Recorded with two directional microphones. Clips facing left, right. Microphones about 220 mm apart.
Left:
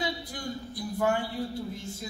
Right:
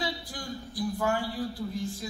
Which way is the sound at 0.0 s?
20° left (ahead or behind).